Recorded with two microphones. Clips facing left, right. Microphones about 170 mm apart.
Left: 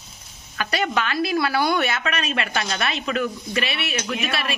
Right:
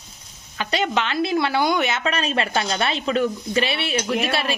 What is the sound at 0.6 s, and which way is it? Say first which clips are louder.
Speech: right 1 dB; 20° right (ahead or behind).